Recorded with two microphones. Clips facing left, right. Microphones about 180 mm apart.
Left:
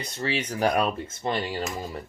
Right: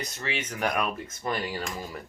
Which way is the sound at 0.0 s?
30° left (ahead or behind).